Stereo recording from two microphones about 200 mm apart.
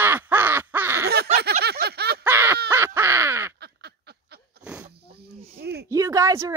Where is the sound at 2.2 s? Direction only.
10° right (ahead or behind).